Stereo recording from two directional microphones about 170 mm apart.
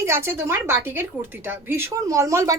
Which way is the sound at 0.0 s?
15° right (ahead or behind).